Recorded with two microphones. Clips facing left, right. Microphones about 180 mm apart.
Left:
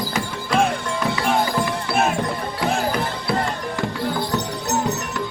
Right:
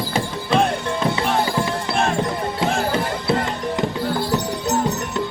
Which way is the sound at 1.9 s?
5° left (ahead or behind).